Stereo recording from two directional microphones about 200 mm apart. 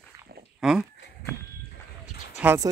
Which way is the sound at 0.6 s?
5° right (ahead or behind).